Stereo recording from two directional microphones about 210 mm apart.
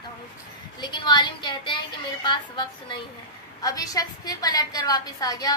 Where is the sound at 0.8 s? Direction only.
20° left (ahead or behind).